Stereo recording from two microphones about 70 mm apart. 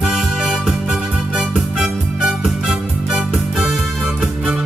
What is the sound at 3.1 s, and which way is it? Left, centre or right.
Music, centre.